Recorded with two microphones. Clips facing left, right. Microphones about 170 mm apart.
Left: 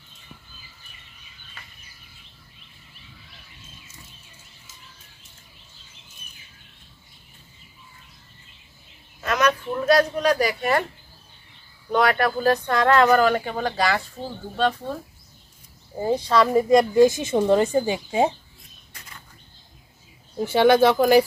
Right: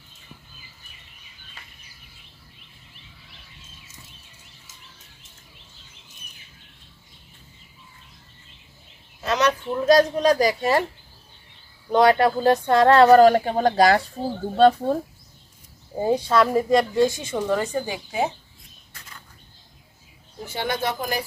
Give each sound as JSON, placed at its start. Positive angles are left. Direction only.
{"t": 9.2, "sound": "speech", "side_deg": -25}
{"t": 11.9, "sound": "speech", "side_deg": -25}
{"t": 16.0, "sound": "speech", "side_deg": -10}
{"t": 16.3, "sound": "speech", "side_deg": 0}
{"t": 16.7, "sound": "speech", "side_deg": 15}
{"t": 20.4, "sound": "speech", "side_deg": 80}